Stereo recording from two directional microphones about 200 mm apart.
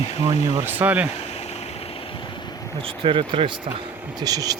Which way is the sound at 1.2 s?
30° left (ahead or behind).